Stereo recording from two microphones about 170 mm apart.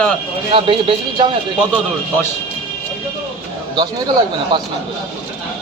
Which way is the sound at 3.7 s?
25° right (ahead or behind).